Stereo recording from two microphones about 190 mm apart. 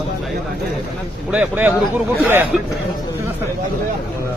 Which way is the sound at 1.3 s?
10° right (ahead or behind).